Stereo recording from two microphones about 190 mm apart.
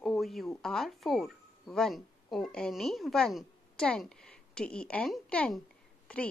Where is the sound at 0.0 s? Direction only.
Centre (ahead or behind).